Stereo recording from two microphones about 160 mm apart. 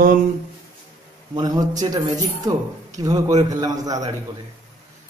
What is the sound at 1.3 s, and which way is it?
Speech, 25° right (ahead or behind).